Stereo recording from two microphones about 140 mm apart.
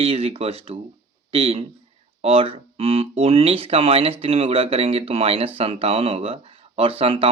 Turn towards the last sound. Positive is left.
turn(degrees=-40)  # may be behind; listen again after turning